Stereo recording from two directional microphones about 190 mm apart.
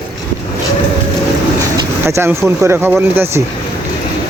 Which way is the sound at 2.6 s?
10° right (ahead or behind).